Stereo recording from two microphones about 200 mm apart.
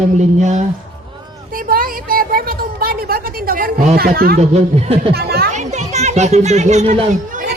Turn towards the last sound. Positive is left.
turn(degrees=-30)  # may be behind; listen again after turning